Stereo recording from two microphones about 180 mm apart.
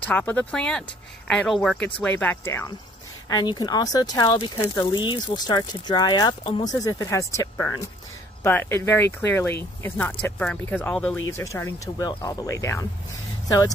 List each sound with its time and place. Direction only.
0.0 s speech: 10° left (ahead or behind)
11.5 s speech: 15° left (ahead or behind)